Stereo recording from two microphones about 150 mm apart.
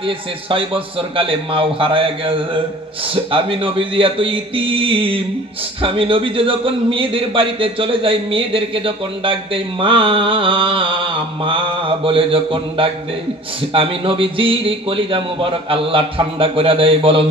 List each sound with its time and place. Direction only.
0.0 s a man's voice: 35° right (ahead or behind)